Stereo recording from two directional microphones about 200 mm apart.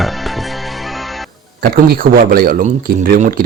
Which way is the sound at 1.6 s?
45° right (ahead or behind).